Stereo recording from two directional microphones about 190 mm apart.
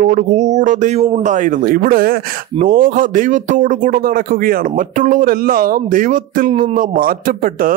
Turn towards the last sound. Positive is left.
turn(degrees=-45)  # may be behind; listen again after turning